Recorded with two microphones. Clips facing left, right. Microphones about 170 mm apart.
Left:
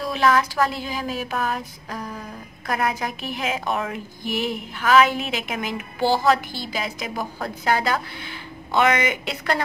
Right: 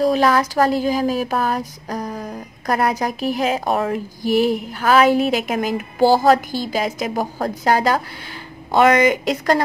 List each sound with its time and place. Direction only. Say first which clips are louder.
0.0 s speech: right 5 dB; 40° right (ahead or behind)